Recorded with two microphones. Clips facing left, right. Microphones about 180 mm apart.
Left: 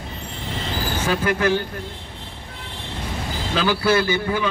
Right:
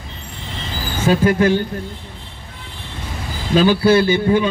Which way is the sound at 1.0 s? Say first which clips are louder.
Right 7 dB; 30° right (ahead or behind).